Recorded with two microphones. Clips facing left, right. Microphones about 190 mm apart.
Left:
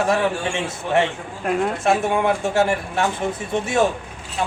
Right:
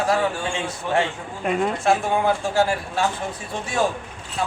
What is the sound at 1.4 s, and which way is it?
Speech, centre (ahead or behind).